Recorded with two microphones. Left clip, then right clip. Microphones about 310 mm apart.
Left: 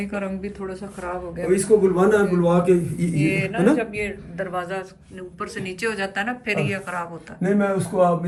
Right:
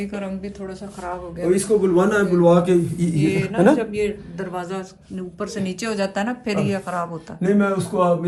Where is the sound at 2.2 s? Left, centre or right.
Right.